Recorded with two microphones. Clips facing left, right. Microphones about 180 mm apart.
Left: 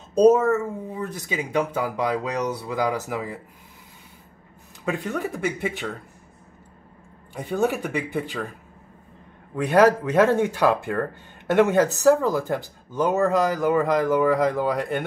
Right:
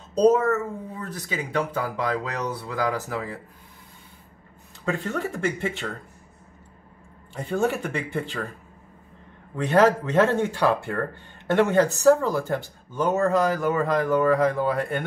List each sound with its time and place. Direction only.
0.4 s speech: 10° left (ahead or behind)
4.8 s speech: 15° left (ahead or behind)
5.1 s speech: centre (ahead or behind)
7.6 s speech: centre (ahead or behind)
9.6 s speech: 15° left (ahead or behind)